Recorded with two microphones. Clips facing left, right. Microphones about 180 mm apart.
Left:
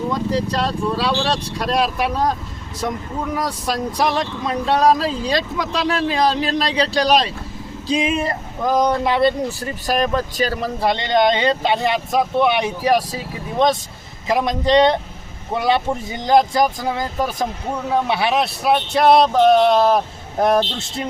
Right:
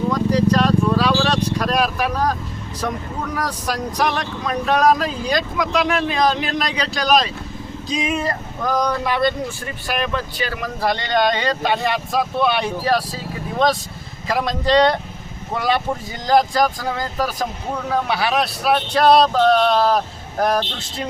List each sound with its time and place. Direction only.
0.1 s vehicle: 25° left (ahead or behind)
3.3 s speech: 25° left (ahead or behind)